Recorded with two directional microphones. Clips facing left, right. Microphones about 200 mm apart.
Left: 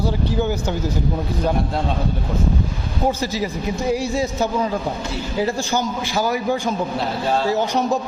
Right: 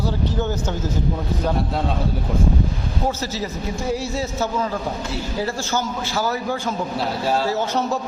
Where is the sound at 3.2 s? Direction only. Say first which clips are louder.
Left 3 dB; 15° left (ahead or behind).